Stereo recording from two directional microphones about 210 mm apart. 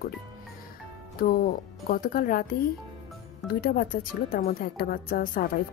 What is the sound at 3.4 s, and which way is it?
Speech, 45° left (ahead or behind).